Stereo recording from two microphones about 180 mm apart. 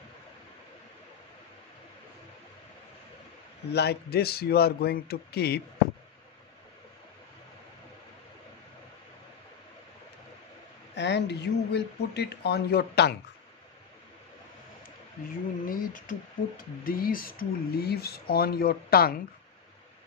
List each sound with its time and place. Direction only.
3.7 s speech: 65° left (ahead or behind)
11.0 s speech: 70° left (ahead or behind)
15.6 s speech: 50° left (ahead or behind)